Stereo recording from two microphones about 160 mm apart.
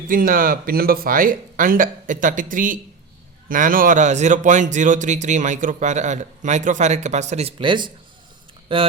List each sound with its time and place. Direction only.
0.1 s speech: 60° right (ahead or behind); by 8.8 s 30° right (ahead or behind)